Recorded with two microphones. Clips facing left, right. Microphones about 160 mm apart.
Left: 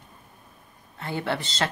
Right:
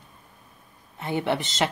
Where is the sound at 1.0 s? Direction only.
20° right (ahead or behind).